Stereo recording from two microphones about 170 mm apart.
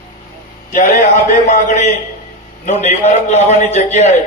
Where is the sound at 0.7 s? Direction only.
50° left (ahead or behind).